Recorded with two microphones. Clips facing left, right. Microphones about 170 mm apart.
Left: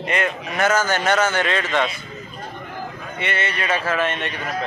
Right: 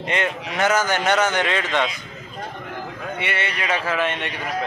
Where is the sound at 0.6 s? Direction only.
15° right (ahead or behind).